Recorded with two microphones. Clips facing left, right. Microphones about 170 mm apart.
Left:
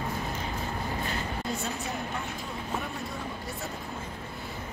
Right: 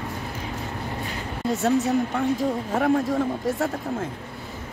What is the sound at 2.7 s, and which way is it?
Speech, 90° right.